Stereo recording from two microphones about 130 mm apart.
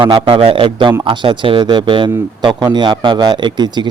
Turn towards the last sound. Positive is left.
turn(degrees=-35)  # may be behind; listen again after turning